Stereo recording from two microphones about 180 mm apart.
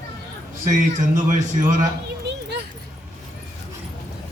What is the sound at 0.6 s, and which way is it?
A man's voice, 45° right (ahead or behind).